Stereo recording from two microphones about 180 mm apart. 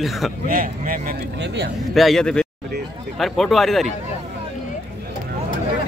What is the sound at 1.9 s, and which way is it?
Speech, centre (ahead or behind).